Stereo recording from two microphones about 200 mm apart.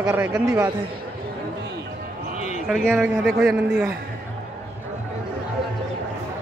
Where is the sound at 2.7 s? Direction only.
Centre (ahead or behind).